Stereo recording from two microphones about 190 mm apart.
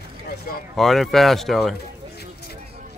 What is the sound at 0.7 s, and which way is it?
Speech, centre (ahead or behind).